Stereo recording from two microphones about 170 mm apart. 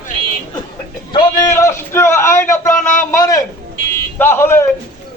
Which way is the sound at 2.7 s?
50° left (ahead or behind).